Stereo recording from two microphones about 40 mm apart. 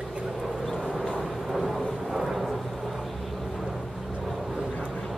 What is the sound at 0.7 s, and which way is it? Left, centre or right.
Vehicle, centre.